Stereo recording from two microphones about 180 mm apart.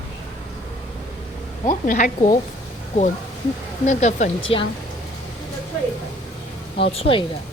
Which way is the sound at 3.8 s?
40° left (ahead or behind).